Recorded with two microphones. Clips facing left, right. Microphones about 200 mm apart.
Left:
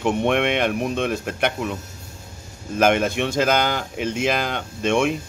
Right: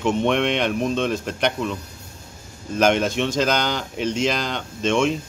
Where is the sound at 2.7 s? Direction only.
55° left (ahead or behind).